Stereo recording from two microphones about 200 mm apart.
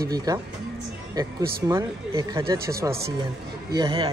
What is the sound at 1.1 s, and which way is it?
A man's voice, 20° right (ahead or behind).